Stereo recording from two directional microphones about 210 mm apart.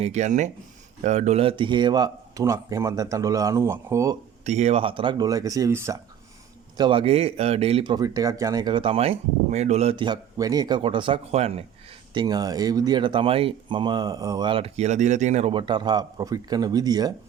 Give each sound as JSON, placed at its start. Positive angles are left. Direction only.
{"t": 0.0, "sound": "speech", "side_deg": -35}
{"t": 4.4, "sound": "speech", "side_deg": -30}
{"t": 12.1, "sound": "speech", "side_deg": -20}